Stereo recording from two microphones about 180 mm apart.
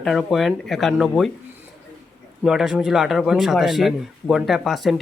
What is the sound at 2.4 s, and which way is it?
Speech, centre (ahead or behind).